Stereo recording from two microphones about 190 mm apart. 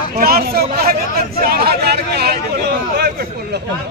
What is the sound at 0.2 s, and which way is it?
Speech, 55° right (ahead or behind).